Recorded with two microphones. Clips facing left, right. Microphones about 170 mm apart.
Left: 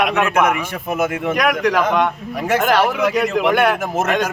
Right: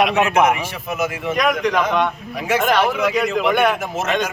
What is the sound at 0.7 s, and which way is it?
Speech, 50° left (ahead or behind).